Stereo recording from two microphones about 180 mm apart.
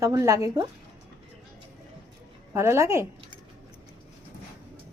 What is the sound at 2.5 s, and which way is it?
Speech, 15° right (ahead or behind).